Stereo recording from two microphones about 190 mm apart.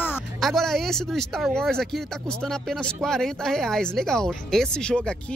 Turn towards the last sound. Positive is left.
turn(degrees=5)  # may be behind; listen again after turning